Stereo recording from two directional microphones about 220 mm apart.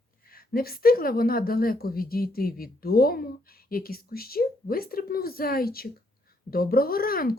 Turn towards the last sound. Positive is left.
turn(degrees=40)  # may be behind; listen again after turning